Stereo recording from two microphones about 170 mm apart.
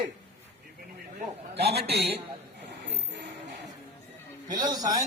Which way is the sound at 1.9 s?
70° right (ahead or behind).